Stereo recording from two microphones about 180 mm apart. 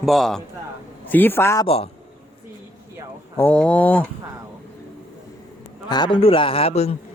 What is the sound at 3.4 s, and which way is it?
Speech, 10° left (ahead or behind).